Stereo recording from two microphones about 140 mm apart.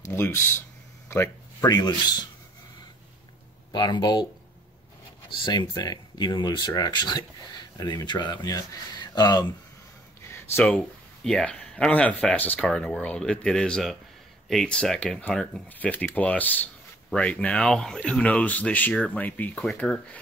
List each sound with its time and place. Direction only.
0.0 s a sound: 15° left (ahead or behind)
1.7 s speech: 30° left (ahead or behind)
3.7 s speech: 30° left (ahead or behind)
5.3 s speech: 35° left (ahead or behind)
10.2 s a sound: 15° left (ahead or behind)
11.2 s speech: 5° left (ahead or behind)